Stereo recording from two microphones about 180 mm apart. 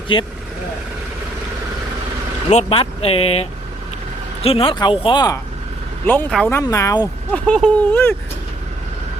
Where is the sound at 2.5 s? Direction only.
35° left (ahead or behind).